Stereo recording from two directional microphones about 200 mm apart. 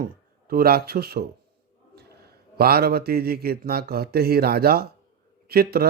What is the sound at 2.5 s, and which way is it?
Speech, 50° right (ahead or behind).